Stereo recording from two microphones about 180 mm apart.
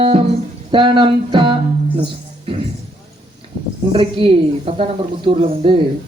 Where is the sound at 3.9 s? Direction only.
30° right (ahead or behind).